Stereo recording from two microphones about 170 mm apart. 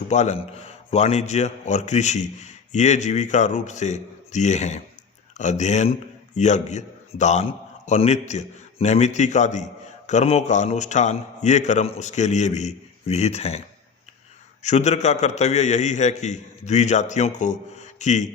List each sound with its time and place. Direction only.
0.1 s a man's voice: 40° left (ahead or behind)
14.6 s a man's voice: 40° left (ahead or behind)